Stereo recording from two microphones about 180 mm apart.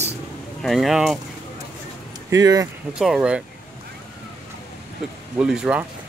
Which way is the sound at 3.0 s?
5° right (ahead or behind).